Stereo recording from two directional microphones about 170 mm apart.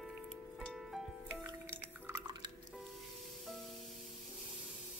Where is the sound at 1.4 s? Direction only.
15° right (ahead or behind).